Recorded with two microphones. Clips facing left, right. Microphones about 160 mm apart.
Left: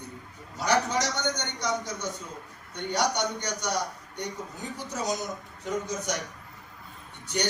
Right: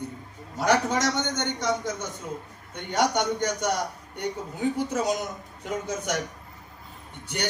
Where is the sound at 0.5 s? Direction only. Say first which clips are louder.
Right 3 dB; 55° right (ahead or behind).